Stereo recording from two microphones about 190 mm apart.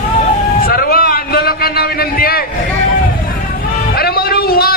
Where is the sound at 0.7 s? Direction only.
55° left (ahead or behind).